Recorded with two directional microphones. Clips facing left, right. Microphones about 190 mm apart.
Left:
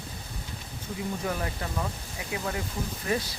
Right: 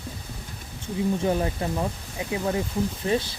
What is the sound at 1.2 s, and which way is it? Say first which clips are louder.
Speech: right 7 dB; 25° right (ahead or behind).